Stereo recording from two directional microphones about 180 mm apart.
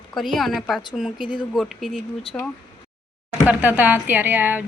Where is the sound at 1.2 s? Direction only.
25° left (ahead or behind).